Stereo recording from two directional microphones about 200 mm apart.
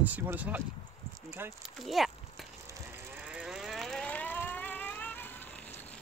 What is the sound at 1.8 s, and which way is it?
Speech, centre (ahead or behind).